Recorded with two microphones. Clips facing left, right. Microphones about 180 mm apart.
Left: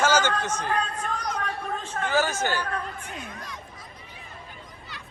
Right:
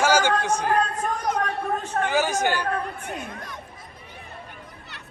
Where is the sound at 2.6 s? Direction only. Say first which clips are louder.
Right 4 dB; 50° right (ahead or behind).